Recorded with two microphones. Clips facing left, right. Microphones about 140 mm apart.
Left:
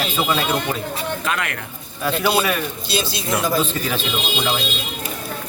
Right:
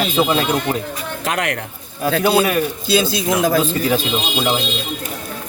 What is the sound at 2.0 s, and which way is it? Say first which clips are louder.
Speech: right 4 dB; 40° right (ahead or behind).